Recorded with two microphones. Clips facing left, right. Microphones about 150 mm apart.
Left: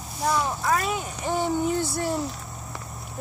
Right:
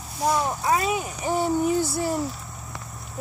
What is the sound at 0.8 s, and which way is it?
Speech, 5° right (ahead or behind).